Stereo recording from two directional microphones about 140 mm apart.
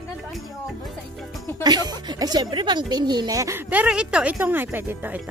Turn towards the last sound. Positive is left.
turn(degrees=-15)  # may be behind; listen again after turning